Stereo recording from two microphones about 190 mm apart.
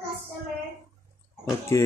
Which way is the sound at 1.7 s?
15° left (ahead or behind).